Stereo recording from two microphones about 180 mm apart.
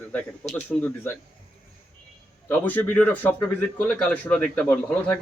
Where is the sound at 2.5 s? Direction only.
10° left (ahead or behind).